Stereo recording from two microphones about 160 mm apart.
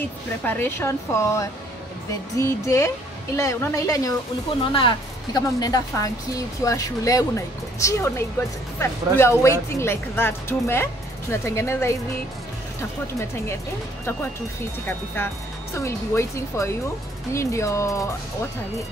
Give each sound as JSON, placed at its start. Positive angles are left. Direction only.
{"t": 0.4, "sound": "speech", "side_deg": 15}
{"t": 14.9, "sound": "speech", "side_deg": 15}